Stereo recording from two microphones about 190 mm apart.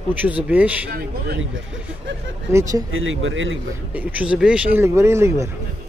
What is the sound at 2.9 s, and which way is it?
Speech, 90° right.